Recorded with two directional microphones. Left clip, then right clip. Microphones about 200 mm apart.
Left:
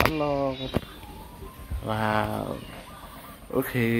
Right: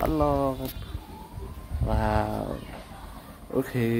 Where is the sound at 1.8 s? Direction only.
Centre (ahead or behind).